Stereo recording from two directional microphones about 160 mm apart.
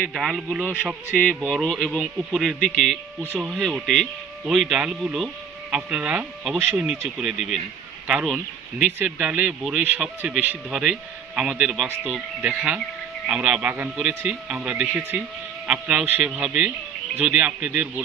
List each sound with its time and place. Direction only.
0.0 s speech: centre (ahead or behind)
3.2 s speech: 10° right (ahead or behind)
3.4 s speech: centre (ahead or behind)